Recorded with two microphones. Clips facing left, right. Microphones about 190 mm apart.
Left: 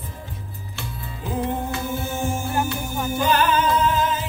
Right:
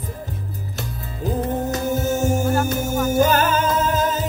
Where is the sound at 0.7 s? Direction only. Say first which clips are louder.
Even; 40° right (ahead or behind).